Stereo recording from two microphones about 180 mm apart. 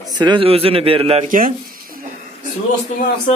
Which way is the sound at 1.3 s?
50° right (ahead or behind).